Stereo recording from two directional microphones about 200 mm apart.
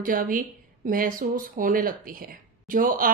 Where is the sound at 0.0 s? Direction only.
45° right (ahead or behind).